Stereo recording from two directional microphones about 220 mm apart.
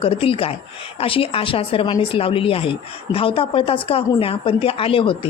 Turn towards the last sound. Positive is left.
turn(degrees=25)  # may be behind; listen again after turning